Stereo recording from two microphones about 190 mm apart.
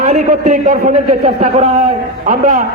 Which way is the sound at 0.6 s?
45° right (ahead or behind).